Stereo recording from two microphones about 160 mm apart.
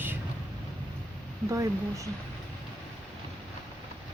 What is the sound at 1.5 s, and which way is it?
Speech, 20° right (ahead or behind).